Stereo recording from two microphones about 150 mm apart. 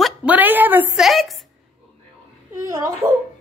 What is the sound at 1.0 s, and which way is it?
Speech, centre (ahead or behind).